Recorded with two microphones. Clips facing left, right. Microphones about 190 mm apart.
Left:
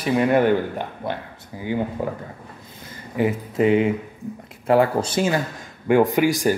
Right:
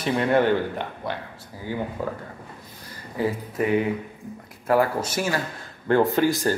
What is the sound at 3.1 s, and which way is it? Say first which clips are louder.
Speech: left 4 dB; 20° left (ahead or behind).